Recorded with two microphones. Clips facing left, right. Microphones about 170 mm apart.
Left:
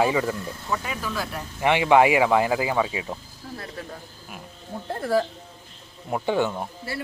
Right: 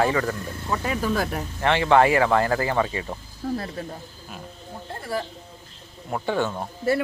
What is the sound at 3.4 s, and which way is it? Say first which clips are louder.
Speech: right 11 dB; 50° right (ahead or behind).